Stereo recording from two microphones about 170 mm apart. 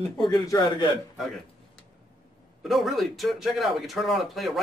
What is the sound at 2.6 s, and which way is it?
Speech, centre (ahead or behind).